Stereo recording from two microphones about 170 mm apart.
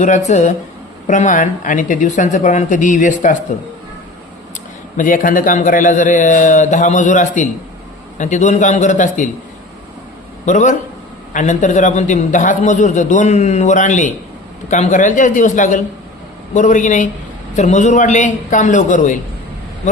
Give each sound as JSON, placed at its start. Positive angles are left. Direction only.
{"t": 0.3, "sound": "a man's voice", "side_deg": 45}
{"t": 4.9, "sound": "a man's voice", "side_deg": 50}
{"t": 10.4, "sound": "a man's voice", "side_deg": 45}